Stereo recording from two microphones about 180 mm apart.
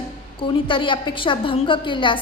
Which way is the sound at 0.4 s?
25° left (ahead or behind).